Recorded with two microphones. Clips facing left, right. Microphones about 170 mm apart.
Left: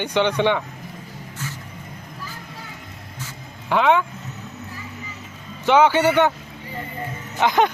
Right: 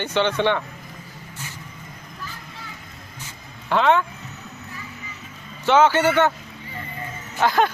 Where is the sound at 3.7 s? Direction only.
10° left (ahead or behind).